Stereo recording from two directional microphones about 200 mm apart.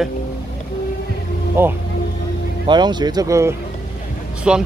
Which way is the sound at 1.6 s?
10° right (ahead or behind).